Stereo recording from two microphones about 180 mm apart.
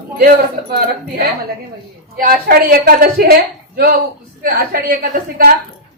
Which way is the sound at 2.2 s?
55° right (ahead or behind).